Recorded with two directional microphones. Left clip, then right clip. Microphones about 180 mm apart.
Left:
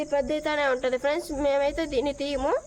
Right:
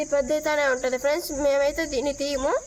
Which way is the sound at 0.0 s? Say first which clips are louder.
Right 3 dB; 35° left (ahead or behind).